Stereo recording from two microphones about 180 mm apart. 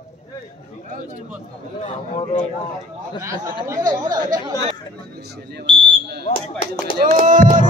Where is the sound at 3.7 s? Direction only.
20° right (ahead or behind).